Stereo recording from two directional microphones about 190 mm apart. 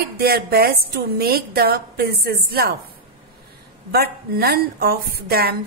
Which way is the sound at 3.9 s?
55° right (ahead or behind).